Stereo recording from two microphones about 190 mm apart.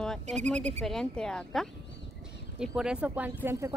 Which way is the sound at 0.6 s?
35° right (ahead or behind).